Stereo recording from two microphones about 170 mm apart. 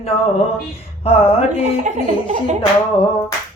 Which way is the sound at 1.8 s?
45° right (ahead or behind).